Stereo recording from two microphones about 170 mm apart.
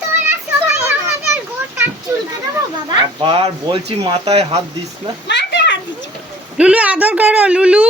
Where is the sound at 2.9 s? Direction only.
25° right (ahead or behind).